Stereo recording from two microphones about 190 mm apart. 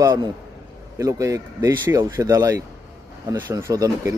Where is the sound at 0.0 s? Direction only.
20° right (ahead or behind).